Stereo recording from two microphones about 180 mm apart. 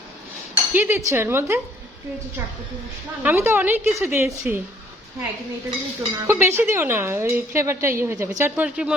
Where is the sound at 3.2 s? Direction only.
10° right (ahead or behind).